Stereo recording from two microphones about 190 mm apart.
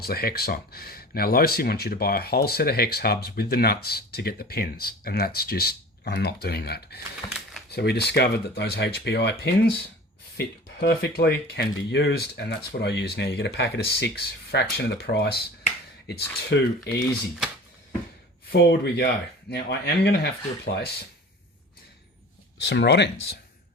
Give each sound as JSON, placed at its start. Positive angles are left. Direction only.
{"t": 0.0, "sound": "speech", "side_deg": 55}
{"t": 7.2, "sound": "speech", "side_deg": 20}
{"t": 7.7, "sound": "speech", "side_deg": 60}
{"t": 18.5, "sound": "speech", "side_deg": 60}
{"t": 22.6, "sound": "speech", "side_deg": 60}